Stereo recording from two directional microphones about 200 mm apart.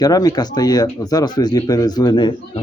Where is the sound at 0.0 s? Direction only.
20° left (ahead or behind).